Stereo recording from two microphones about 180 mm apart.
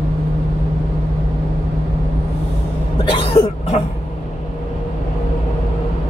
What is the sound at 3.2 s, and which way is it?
Cough, 30° left (ahead or behind).